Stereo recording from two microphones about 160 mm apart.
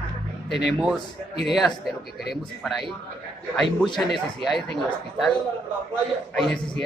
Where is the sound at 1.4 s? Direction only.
Centre (ahead or behind).